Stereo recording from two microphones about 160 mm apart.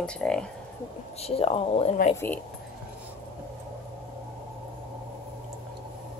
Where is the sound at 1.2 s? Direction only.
40° left (ahead or behind).